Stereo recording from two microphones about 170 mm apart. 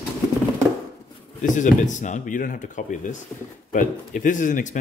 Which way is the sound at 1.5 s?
45° left (ahead or behind).